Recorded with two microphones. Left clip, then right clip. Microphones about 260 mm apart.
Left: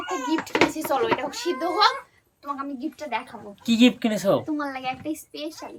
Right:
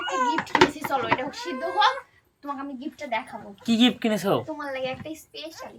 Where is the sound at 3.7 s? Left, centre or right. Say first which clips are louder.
Left 2 dB; centre.